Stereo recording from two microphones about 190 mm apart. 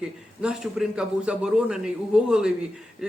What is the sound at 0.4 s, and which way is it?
Speech, 5° right (ahead or behind).